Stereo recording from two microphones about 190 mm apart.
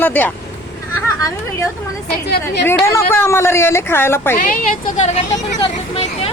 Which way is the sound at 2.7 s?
15° left (ahead or behind).